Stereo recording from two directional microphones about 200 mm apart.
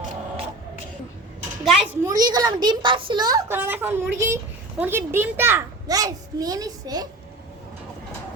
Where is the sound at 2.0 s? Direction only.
20° right (ahead or behind).